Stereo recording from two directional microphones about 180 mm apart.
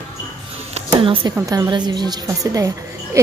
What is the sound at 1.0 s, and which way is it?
Speech, 30° right (ahead or behind).